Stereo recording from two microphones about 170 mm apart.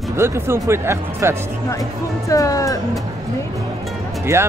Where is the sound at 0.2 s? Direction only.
15° right (ahead or behind).